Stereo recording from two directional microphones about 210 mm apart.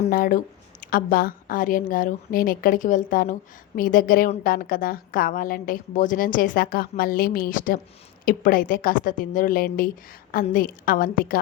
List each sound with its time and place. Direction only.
0.0 s a woman's voice: 40° left (ahead or behind)